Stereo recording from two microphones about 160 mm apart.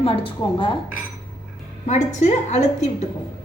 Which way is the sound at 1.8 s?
45° left (ahead or behind).